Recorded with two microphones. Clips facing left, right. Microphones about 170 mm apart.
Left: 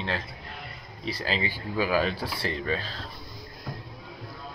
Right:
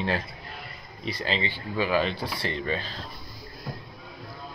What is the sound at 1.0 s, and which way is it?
Speech, 5° left (ahead or behind).